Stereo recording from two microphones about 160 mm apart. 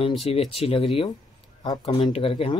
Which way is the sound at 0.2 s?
35° left (ahead or behind).